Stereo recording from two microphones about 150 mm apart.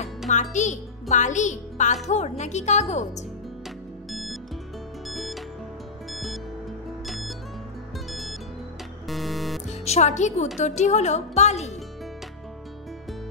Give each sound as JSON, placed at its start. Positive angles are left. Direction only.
{"t": 0.3, "sound": "a child's voice", "side_deg": 55}
{"t": 4.1, "sound": "music", "side_deg": 0}
{"t": 9.7, "sound": "a woman's voice", "side_deg": 50}